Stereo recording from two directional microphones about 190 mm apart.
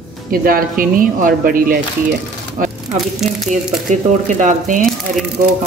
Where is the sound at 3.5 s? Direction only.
40° right (ahead or behind).